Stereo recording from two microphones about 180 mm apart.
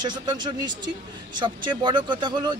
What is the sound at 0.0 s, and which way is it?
A man's voice, 25° right (ahead or behind).